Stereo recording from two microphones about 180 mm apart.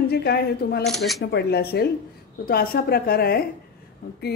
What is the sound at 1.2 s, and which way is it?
Speech, 65° left (ahead or behind).